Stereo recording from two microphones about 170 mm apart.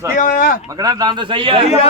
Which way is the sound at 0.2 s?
55° left (ahead or behind).